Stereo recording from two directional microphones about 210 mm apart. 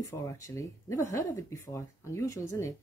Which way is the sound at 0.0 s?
15° left (ahead or behind).